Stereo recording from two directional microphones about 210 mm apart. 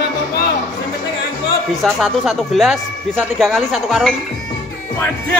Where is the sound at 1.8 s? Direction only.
5° right (ahead or behind).